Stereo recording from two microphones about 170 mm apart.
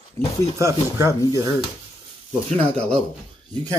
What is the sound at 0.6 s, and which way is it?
Speech, 15° right (ahead or behind).